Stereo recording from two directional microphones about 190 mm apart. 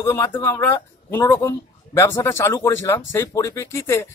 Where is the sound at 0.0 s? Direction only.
15° left (ahead or behind).